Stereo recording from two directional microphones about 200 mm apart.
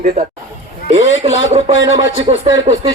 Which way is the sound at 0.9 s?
75° left (ahead or behind).